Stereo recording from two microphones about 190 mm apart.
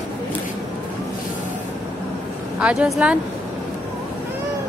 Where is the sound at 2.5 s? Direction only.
5° right (ahead or behind).